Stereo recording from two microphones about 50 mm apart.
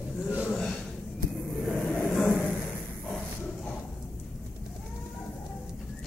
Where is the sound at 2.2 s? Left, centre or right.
Left.